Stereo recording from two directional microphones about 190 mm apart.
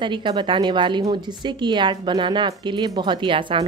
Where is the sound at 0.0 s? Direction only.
25° right (ahead or behind).